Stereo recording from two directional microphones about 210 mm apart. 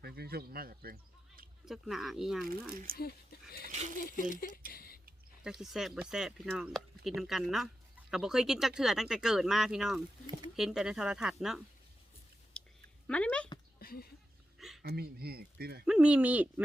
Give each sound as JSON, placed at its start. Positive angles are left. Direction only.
{"t": 0.0, "sound": "speech", "side_deg": -50}
{"t": 1.6, "sound": "speech", "side_deg": 0}
{"t": 2.6, "sound": "speech", "side_deg": -45}
{"t": 4.4, "sound": "speech", "side_deg": 45}
{"t": 4.7, "sound": "a sound", "side_deg": 45}
{"t": 5.4, "sound": "speech", "side_deg": -5}
{"t": 12.6, "sound": "chewing", "side_deg": 5}
{"t": 13.1, "sound": "a sound", "side_deg": 5}
{"t": 13.7, "sound": "a sound", "side_deg": 45}
{"t": 14.8, "sound": "speech", "side_deg": -50}
{"t": 15.9, "sound": "speech", "side_deg": -5}